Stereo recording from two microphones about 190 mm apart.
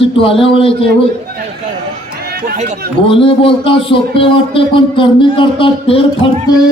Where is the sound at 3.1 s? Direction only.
30° left (ahead or behind).